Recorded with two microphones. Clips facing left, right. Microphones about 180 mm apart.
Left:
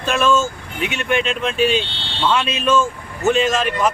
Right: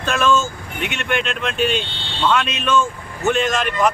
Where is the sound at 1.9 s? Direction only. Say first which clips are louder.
Even; 70° left (ahead or behind).